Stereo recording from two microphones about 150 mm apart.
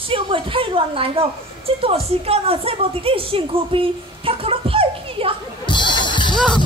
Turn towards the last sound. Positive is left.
turn(degrees=30)  # may be behind; listen again after turning